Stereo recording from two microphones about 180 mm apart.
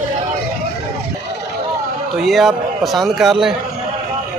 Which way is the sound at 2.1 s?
Centre (ahead or behind).